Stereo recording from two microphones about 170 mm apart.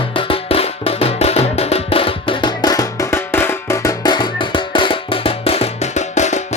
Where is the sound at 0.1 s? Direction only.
30° left (ahead or behind).